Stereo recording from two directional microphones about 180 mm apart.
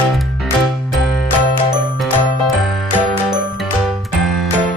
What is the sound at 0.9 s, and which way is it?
Music, centre (ahead or behind).